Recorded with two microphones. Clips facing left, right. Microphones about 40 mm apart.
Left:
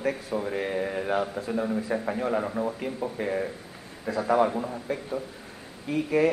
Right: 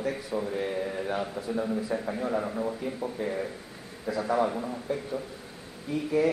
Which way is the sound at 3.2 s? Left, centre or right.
Left.